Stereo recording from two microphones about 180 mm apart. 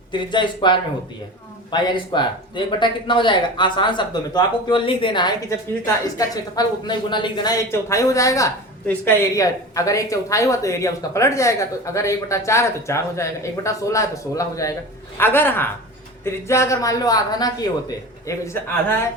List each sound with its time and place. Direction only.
0.1 s speech: 25° left (ahead or behind)